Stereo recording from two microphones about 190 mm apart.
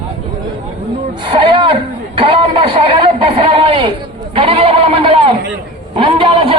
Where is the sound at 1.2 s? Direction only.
25° right (ahead or behind).